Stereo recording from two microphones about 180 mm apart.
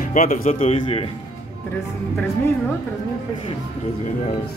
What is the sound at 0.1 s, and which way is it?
Speech, 45° left (ahead or behind).